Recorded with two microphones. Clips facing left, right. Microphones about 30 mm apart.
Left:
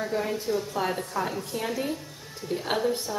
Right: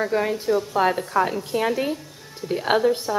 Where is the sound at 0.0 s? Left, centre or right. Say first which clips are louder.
Right 6 dB; right.